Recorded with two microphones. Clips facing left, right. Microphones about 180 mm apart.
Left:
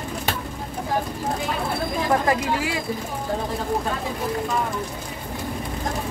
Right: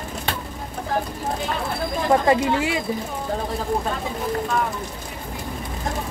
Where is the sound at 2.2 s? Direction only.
25° right (ahead or behind).